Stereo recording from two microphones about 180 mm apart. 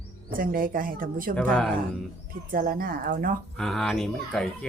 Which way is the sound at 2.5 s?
50° right (ahead or behind).